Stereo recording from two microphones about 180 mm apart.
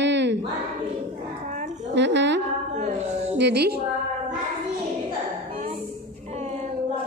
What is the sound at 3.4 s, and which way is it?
Speech, 65° right (ahead or behind).